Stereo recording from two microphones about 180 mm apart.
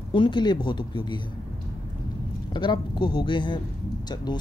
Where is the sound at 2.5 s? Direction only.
25° left (ahead or behind).